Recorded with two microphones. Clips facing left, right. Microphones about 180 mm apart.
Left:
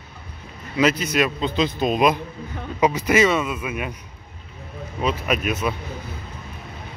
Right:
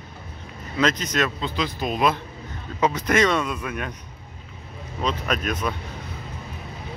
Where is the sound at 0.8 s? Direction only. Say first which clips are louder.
Left 3 dB; 10° left (ahead or behind).